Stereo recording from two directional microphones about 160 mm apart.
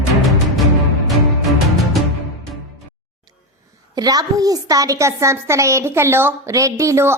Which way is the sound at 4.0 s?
25° right (ahead or behind).